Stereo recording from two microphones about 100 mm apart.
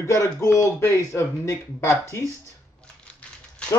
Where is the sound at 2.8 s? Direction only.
10° left (ahead or behind).